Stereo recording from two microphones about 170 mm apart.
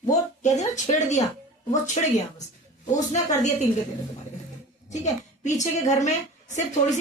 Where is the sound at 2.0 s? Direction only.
40° left (ahead or behind).